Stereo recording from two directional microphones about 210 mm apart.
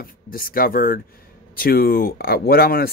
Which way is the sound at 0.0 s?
45° left (ahead or behind).